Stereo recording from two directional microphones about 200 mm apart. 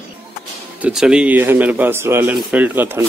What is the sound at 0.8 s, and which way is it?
A man's voice, 5° right (ahead or behind).